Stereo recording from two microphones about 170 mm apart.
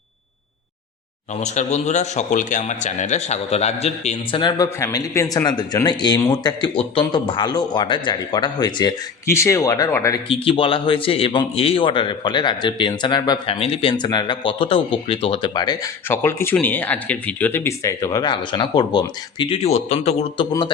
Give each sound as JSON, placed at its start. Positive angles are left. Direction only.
{"t": 1.4, "sound": "speech", "side_deg": 40}
{"t": 10.2, "sound": "speech", "side_deg": 30}